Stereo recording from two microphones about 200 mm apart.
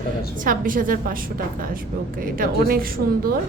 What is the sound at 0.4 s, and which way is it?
Speech, 45° right (ahead or behind).